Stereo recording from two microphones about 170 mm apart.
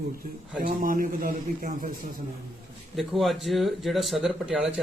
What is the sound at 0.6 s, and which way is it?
Speech, 55° right (ahead or behind).